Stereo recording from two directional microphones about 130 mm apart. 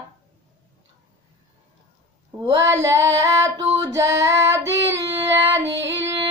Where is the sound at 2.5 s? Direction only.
25° right (ahead or behind).